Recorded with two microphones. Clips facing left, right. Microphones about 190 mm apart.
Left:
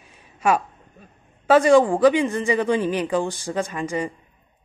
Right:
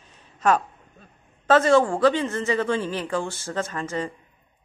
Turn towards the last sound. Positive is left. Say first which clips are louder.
# left 3 dB
turn(degrees=15)  # may be behind; listen again after turning